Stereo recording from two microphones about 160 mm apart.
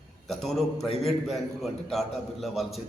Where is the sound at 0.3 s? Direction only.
Centre (ahead or behind).